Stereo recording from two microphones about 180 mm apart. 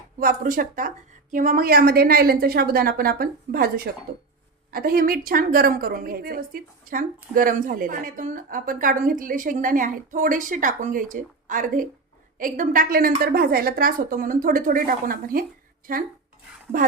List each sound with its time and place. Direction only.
0.2 s a woman's voice: 50° right (ahead or behind)
16.7 s a woman's voice: 50° right (ahead or behind)